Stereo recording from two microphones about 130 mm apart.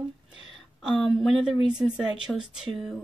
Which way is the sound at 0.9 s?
Centre (ahead or behind).